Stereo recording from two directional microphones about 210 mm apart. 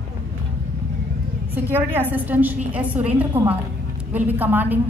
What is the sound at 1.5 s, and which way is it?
A woman's voice, 10° right (ahead or behind).